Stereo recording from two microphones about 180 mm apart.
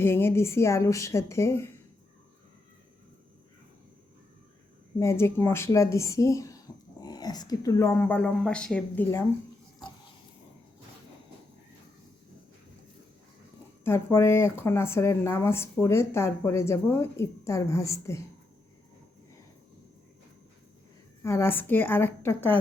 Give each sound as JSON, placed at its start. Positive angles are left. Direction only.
{"t": 0.0, "sound": "speech", "side_deg": 15}
{"t": 4.9, "sound": "speech", "side_deg": 15}
{"t": 13.8, "sound": "speech", "side_deg": 15}
{"t": 21.2, "sound": "speech", "side_deg": 15}